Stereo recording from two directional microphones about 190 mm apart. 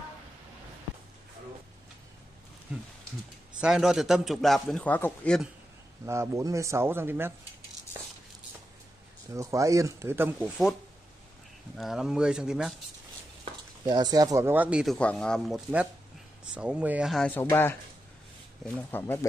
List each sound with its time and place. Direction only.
3.6 s a man's voice: 5° right (ahead or behind)
6.0 s speech: 15° right (ahead or behind)
9.3 s speech: 15° right (ahead or behind)
11.7 s a man's voice: centre (ahead or behind)
13.8 s a man's voice: 20° right (ahead or behind); by 17.3 s centre (ahead or behind)
17.3 s speech: 10° left (ahead or behind)
18.8 s speech: 10° left (ahead or behind)